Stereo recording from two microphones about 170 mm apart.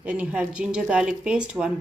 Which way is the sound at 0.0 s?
10° right (ahead or behind).